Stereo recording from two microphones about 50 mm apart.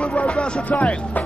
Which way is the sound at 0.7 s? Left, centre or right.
Left.